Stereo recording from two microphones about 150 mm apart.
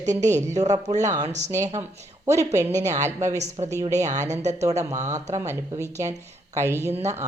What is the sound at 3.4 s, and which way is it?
Speech, 50° right (ahead or behind).